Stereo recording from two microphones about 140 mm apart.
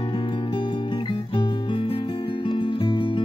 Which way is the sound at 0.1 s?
35° left (ahead or behind).